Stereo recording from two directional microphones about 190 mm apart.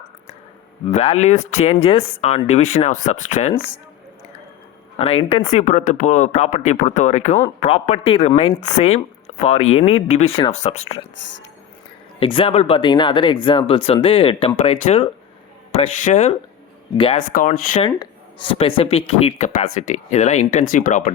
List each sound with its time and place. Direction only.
0.9 s speech: 35° left (ahead or behind)
4.9 s speech: 30° left (ahead or behind)
12.2 s speech: 30° left (ahead or behind); by 17.8 s 45° left (ahead or behind)
17.8 s speech: 25° left (ahead or behind); by 21.1 s 40° left (ahead or behind)